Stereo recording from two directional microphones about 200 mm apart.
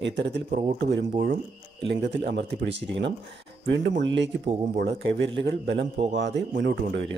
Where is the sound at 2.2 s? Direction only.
60° right (ahead or behind).